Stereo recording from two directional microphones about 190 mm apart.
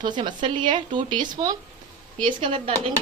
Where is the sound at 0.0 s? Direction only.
25° right (ahead or behind).